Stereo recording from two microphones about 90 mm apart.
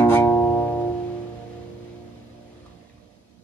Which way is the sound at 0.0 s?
45° left (ahead or behind).